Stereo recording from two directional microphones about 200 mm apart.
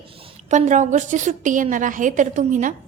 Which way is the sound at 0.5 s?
35° right (ahead or behind).